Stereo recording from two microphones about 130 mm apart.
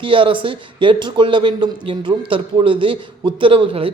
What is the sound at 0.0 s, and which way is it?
A man's voice, 40° right (ahead or behind).